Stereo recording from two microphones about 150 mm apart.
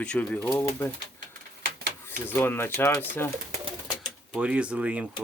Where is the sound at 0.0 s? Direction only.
10° left (ahead or behind).